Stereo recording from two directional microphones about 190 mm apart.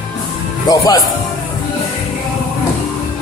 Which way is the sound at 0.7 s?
20° left (ahead or behind).